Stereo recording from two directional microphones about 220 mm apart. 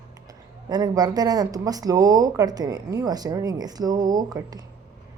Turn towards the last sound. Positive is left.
turn(degrees=-15)  # may be behind; listen again after turning